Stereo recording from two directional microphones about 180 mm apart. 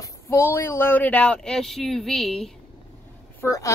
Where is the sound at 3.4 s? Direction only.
15° left (ahead or behind).